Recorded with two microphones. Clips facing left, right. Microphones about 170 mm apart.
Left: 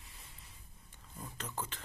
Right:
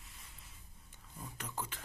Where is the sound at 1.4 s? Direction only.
10° right (ahead or behind).